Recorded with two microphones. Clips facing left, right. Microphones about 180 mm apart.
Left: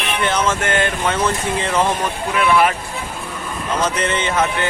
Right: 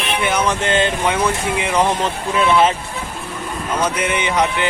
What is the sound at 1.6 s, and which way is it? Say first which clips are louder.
Speech: right 2 dB; 15° right (ahead or behind).